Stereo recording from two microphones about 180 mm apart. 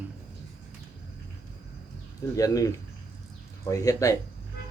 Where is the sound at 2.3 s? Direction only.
20° left (ahead or behind).